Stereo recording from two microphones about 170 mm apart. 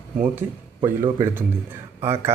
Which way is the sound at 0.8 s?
15° right (ahead or behind).